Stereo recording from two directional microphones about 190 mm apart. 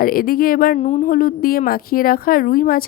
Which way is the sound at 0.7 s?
35° left (ahead or behind).